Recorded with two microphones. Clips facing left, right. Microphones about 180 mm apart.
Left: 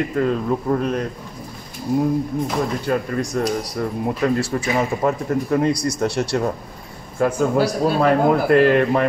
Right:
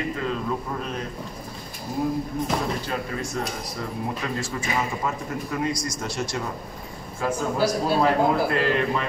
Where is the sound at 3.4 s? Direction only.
55° left (ahead or behind).